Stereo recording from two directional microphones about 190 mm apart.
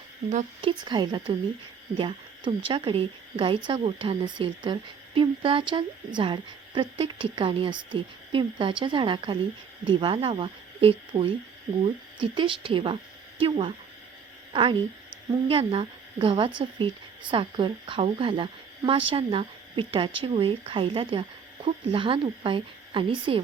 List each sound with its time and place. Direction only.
0.3 s a woman's voice: 35° right (ahead or behind)